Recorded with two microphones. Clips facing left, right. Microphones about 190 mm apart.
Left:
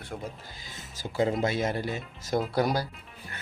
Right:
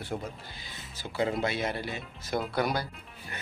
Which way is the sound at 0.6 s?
45° left (ahead or behind).